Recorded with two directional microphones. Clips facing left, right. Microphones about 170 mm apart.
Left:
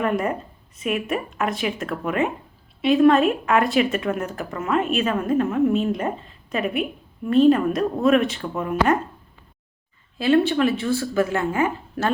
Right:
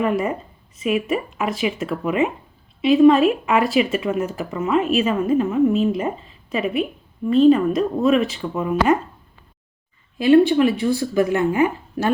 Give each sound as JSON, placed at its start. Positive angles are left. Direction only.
{"t": 0.0, "sound": "speech", "side_deg": -5}
{"t": 10.2, "sound": "speech", "side_deg": -15}